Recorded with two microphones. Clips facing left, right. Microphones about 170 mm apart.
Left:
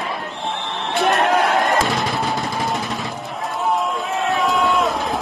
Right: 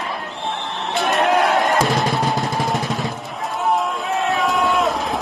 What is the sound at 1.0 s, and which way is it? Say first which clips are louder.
Music: even; centre (ahead or behind).